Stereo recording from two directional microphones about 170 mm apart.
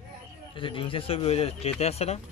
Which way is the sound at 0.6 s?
30° left (ahead or behind).